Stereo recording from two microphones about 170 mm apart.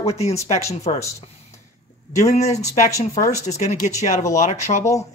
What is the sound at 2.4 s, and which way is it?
Speech, 40° left (ahead or behind).